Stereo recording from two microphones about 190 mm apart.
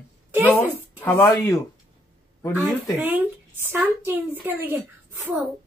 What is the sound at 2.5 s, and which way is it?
A woman's voice, 10° right (ahead or behind).